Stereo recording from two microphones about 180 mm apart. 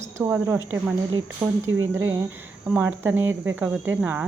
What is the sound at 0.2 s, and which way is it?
Speech, 15° right (ahead or behind).